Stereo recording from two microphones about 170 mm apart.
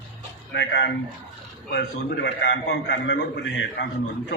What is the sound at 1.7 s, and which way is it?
A man's voice, 80° left.